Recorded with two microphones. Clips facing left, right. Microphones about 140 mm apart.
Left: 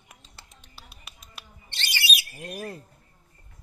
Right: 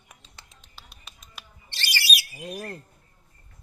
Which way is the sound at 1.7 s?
20° left (ahead or behind).